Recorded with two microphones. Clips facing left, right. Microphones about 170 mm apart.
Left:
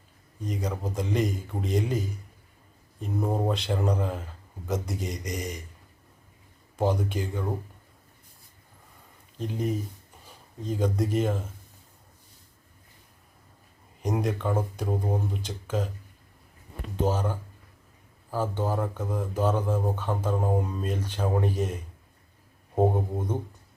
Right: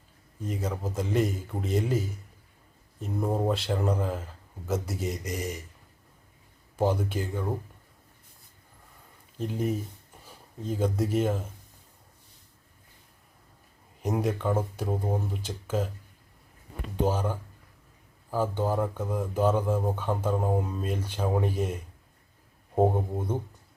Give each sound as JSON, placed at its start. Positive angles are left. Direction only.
{"t": 0.4, "sound": "speech", "side_deg": -5}
{"t": 6.7, "sound": "speech", "side_deg": -5}
{"t": 9.4, "sound": "speech", "side_deg": -5}
{"t": 14.0, "sound": "speech", "side_deg": -5}
{"t": 17.1, "sound": "speech", "side_deg": -10}
{"t": 23.1, "sound": "speech", "side_deg": -10}